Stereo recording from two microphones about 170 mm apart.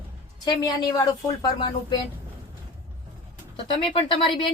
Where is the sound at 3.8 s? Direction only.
30° left (ahead or behind).